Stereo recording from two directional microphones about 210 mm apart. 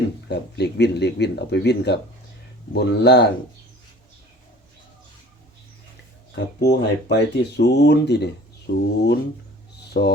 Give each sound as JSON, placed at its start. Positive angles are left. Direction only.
{"t": 0.3, "sound": "speech", "side_deg": 55}
{"t": 6.3, "sound": "speech", "side_deg": 50}